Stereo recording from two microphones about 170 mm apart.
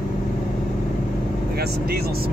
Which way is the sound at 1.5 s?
70° right (ahead or behind).